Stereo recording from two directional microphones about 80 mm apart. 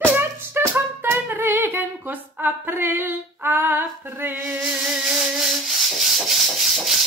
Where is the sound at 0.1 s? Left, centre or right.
Right.